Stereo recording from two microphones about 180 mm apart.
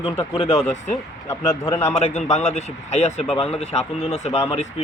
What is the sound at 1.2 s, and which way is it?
Speech, 15° left (ahead or behind).